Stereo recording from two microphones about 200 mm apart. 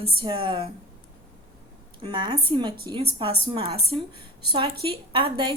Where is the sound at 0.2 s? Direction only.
25° right (ahead or behind).